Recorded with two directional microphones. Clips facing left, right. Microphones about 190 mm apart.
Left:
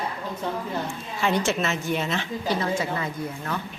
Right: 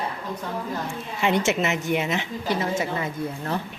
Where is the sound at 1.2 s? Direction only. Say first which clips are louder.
Right 2 dB; 20° right (ahead or behind).